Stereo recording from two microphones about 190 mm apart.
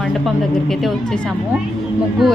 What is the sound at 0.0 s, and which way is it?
A woman's voice, centre (ahead or behind).